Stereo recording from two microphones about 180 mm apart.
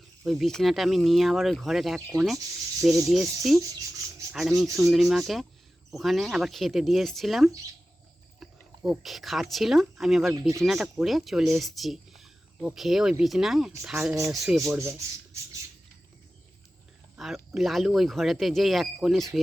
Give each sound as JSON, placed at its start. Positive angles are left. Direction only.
{"t": 0.3, "sound": "speech", "side_deg": 0}
{"t": 8.4, "sound": "a sound", "side_deg": 0}
{"t": 8.8, "sound": "speech", "side_deg": 0}
{"t": 14.7, "sound": "speech", "side_deg": -15}
{"t": 17.2, "sound": "speech", "side_deg": 0}